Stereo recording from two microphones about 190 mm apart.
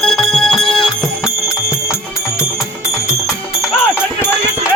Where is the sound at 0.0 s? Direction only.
Centre (ahead or behind).